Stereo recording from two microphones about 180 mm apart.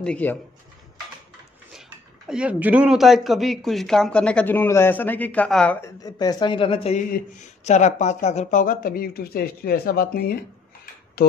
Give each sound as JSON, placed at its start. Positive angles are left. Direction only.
{"t": 0.0, "sound": "speech", "side_deg": 5}
{"t": 1.7, "sound": "speech", "side_deg": -5}
{"t": 6.0, "sound": "speech", "side_deg": 20}